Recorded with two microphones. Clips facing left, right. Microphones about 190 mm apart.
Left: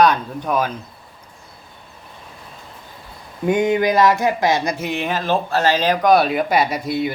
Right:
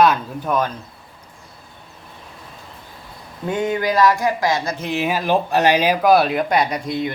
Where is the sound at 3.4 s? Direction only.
15° left (ahead or behind).